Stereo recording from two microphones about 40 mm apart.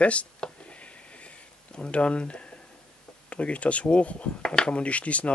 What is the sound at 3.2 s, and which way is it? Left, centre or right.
Speech, left.